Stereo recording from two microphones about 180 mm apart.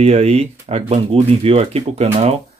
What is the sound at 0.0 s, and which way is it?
Speech, 35° right (ahead or behind).